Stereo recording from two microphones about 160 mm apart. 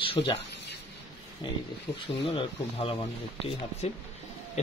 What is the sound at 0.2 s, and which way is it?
Speech, 25° left (ahead or behind).